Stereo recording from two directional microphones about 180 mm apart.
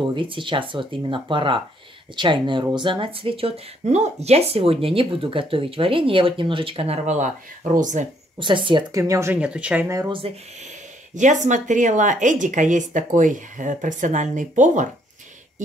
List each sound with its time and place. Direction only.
0.1 s speech: 25° right (ahead or behind); by 8.1 s 45° right (ahead or behind)
8.4 s speech: 25° right (ahead or behind)
11.1 s speech: 45° right (ahead or behind)